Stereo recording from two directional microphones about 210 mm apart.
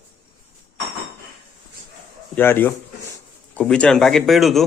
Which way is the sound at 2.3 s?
10° left (ahead or behind).